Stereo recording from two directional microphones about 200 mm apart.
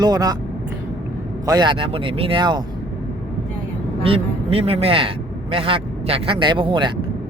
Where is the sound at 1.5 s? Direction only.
20° right (ahead or behind).